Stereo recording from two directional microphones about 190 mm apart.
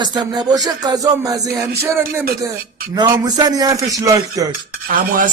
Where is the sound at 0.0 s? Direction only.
20° right (ahead or behind).